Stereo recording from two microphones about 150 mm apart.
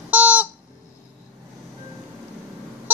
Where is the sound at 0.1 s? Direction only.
10° right (ahead or behind).